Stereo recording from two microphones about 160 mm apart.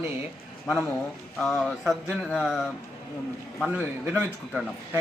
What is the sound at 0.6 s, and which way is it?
Speech, 10° left (ahead or behind).